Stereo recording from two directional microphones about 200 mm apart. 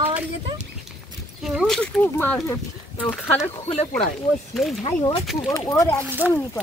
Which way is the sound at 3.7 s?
30° left (ahead or behind).